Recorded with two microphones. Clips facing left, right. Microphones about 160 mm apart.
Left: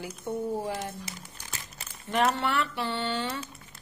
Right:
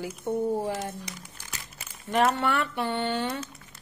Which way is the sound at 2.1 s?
50° right (ahead or behind).